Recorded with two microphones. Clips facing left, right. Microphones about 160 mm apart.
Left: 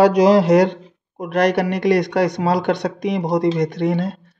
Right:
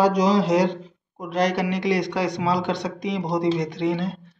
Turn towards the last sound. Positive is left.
turn(degrees=50)  # may be behind; listen again after turning